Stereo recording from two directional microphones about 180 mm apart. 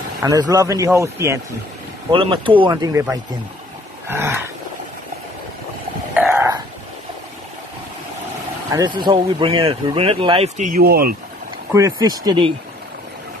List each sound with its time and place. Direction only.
0.2 s speech: 20° right (ahead or behind)
2.0 s speech: 25° right (ahead or behind)
6.1 s throat clearing: 10° right (ahead or behind)
8.7 s speech: 25° right (ahead or behind)
10.7 s speech: 55° right (ahead or behind)
11.7 s speech: 15° right (ahead or behind)